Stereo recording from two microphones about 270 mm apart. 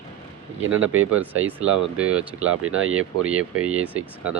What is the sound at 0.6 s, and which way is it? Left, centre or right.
Speech, right.